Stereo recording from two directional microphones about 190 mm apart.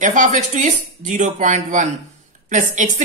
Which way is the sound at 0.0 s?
40° right (ahead or behind).